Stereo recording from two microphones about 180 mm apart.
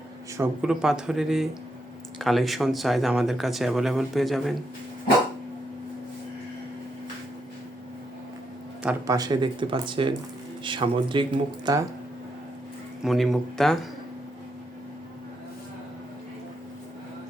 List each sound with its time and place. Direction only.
0.3 s speech: 10° right (ahead or behind)
9.0 s speech: 20° right (ahead or behind)
13.0 s speech: centre (ahead or behind)